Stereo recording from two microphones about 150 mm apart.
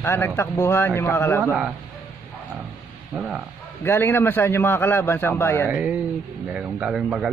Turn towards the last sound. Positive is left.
turn(degrees=-5)  # may be behind; listen again after turning